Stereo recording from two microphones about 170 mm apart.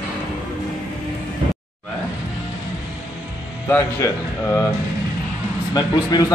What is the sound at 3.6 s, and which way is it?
Speech, 15° left (ahead or behind).